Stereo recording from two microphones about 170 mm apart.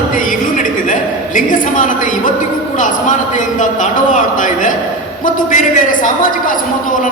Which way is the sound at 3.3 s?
50° left (ahead or behind).